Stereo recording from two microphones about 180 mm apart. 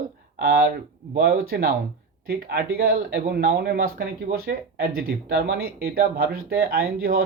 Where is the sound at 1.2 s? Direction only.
60° right (ahead or behind).